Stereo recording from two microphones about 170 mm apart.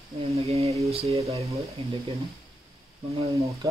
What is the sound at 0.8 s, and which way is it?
Speech, 35° right (ahead or behind).